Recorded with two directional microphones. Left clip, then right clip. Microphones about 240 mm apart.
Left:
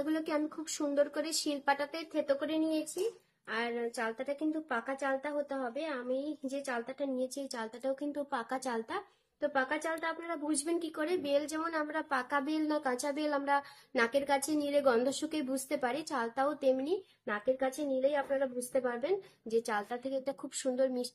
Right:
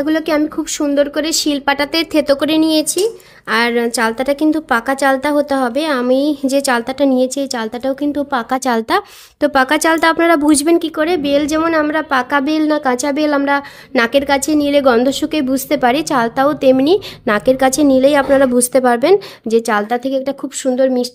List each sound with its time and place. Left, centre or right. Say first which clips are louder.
0.0 s a woman's voice: right 19 dB; right